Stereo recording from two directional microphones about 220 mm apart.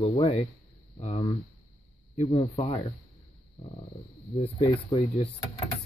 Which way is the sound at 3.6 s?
25° left (ahead or behind).